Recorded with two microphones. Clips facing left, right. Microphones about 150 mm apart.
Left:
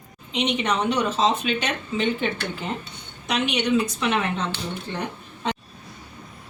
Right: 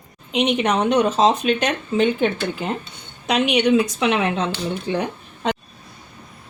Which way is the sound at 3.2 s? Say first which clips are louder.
Right 6 dB; 70° right (ahead or behind).